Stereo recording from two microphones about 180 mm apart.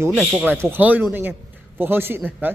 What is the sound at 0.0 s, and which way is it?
A man's voice, 5° right (ahead or behind).